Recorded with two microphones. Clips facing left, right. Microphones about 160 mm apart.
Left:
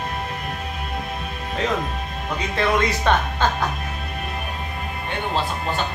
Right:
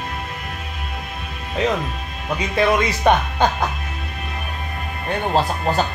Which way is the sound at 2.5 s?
15° right (ahead or behind).